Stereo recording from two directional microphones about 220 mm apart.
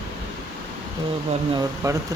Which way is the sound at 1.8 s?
15° right (ahead or behind).